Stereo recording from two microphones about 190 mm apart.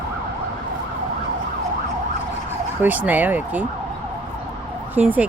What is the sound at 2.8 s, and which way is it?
Speech, 10° right (ahead or behind).